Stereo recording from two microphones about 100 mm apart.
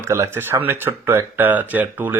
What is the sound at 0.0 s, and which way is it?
Speech, 25° right (ahead or behind).